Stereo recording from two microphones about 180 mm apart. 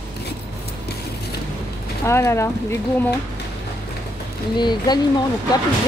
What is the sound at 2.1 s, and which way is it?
Speech, 15° left (ahead or behind).